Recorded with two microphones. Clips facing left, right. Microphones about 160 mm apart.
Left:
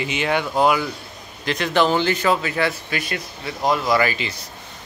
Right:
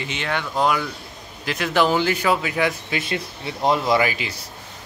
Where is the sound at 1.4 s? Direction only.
5° right (ahead or behind).